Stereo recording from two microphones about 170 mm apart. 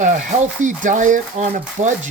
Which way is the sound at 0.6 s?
50° right (ahead or behind).